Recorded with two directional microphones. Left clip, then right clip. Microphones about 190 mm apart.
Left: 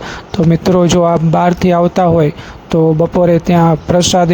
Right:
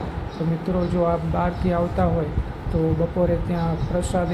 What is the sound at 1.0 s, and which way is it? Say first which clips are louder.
Speech: left 11 dB; 60° left (ahead or behind).